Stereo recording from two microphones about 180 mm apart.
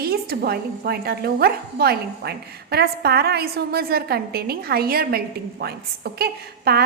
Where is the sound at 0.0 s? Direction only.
60° right (ahead or behind).